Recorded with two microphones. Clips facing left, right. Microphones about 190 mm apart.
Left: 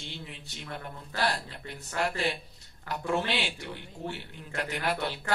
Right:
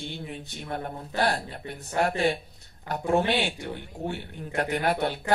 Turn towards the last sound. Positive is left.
turn(degrees=-55)  # may be behind; listen again after turning